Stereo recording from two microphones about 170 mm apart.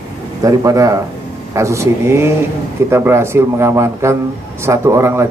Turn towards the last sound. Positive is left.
turn(degrees=-15)  # may be behind; listen again after turning